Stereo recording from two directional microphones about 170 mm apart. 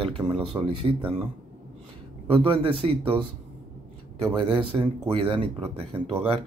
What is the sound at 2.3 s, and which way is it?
Speech, 30° right (ahead or behind).